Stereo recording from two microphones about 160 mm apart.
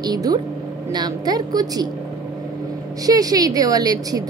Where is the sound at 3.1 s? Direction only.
20° right (ahead or behind).